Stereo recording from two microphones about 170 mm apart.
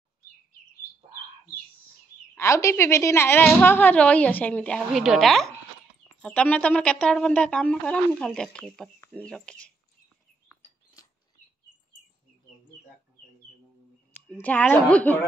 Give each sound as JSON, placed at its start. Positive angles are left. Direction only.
{"t": 2.3, "sound": "a woman's voice", "side_deg": 15}
{"t": 4.7, "sound": "speech", "side_deg": 0}
{"t": 11.0, "sound": "a sound", "side_deg": 20}
{"t": 14.2, "sound": "a woman's voice", "side_deg": 10}